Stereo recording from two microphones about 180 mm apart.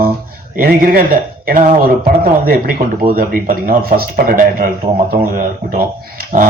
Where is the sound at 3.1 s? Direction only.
50° right (ahead or behind).